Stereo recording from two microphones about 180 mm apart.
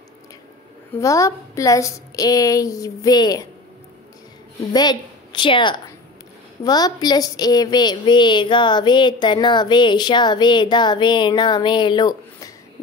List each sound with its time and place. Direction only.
1.0 s a woman's voice: 15° left (ahead or behind)
4.7 s a woman's voice: 25° left (ahead or behind)